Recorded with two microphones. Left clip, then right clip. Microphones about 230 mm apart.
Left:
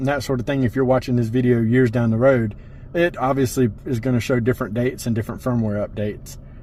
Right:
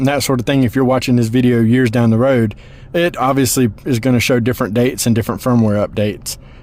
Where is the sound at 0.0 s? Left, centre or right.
Right.